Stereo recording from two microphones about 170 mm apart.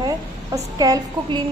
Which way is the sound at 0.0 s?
20° right (ahead or behind).